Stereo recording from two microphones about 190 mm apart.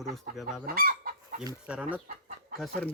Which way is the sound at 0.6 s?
50° right (ahead or behind).